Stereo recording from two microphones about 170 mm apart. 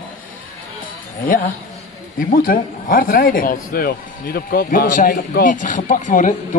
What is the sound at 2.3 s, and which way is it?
Speech, 55° left (ahead or behind).